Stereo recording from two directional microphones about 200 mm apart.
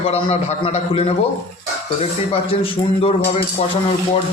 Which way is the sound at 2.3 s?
25° left (ahead or behind).